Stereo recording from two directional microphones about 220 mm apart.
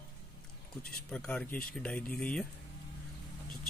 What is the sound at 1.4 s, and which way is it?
Speech, 40° left (ahead or behind).